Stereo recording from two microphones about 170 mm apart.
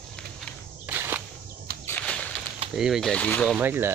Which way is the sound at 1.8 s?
10° left (ahead or behind).